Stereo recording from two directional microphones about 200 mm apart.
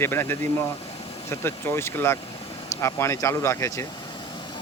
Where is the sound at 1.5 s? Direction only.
10° left (ahead or behind).